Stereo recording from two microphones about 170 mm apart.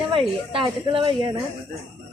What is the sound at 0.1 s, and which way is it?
A woman's voice, 30° right (ahead or behind).